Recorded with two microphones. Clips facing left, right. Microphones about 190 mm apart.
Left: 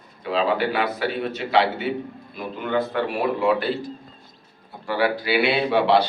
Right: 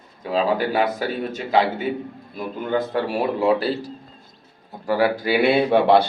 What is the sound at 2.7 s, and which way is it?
A man's voice, 35° right (ahead or behind).